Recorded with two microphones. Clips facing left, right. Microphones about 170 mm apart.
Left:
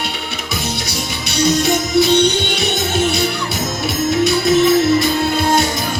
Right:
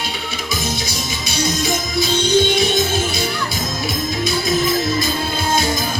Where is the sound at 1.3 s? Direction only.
65° left (ahead or behind).